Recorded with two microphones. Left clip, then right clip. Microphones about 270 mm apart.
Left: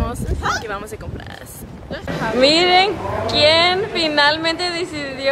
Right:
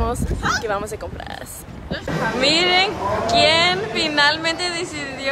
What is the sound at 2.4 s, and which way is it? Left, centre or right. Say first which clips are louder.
A woman's voice: left 4 dB; centre.